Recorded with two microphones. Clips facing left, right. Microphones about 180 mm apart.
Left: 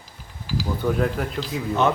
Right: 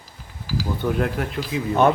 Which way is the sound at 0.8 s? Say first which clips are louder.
Left 1 dB; centre (ahead or behind).